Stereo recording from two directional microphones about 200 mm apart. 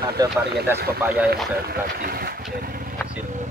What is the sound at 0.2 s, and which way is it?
Speech, 20° right (ahead or behind).